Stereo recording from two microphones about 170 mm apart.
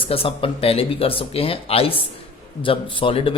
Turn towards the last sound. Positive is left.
turn(degrees=35)  # may be behind; listen again after turning